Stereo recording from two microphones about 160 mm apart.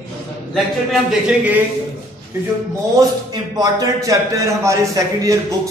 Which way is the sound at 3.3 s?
25° right (ahead or behind).